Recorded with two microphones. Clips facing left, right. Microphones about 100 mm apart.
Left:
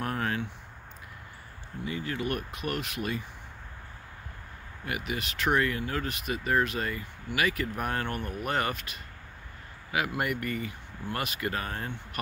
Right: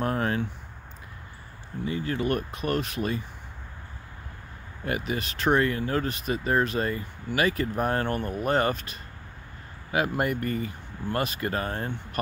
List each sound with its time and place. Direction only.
0.0 s a sound: 30° right (ahead or behind)
1.9 s speech: 35° right (ahead or behind)
4.8 s speech: 35° right (ahead or behind)